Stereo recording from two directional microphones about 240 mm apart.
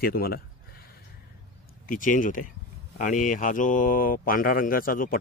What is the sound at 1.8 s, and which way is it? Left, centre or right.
Speech, left.